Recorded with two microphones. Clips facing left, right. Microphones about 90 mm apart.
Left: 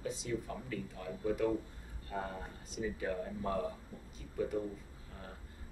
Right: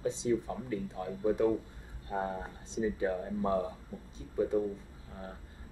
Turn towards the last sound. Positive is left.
turn(degrees=-25)  # may be behind; listen again after turning